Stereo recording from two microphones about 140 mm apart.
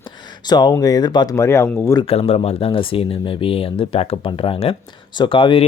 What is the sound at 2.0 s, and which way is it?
Speech, 45° left (ahead or behind).